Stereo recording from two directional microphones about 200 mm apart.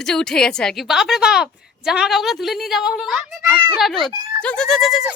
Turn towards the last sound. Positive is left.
turn(degrees=0)  # may be behind; listen again after turning